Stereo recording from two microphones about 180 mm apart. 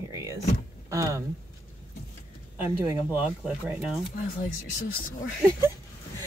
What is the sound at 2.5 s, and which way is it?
Speech, 10° right (ahead or behind).